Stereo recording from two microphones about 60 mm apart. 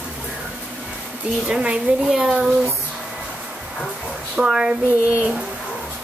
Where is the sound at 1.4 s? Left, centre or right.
Centre.